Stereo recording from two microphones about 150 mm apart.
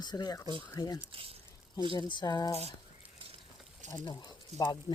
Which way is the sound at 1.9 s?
30° left (ahead or behind).